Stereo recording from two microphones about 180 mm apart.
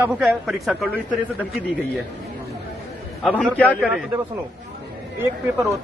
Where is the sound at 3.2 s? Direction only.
5° left (ahead or behind).